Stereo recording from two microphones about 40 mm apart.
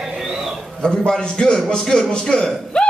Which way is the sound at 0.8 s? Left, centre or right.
Centre.